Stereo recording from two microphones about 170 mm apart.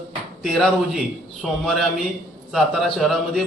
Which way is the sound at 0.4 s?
Centre (ahead or behind).